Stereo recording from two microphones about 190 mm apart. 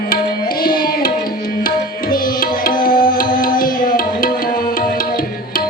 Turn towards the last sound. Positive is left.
turn(degrees=45)  # may be behind; listen again after turning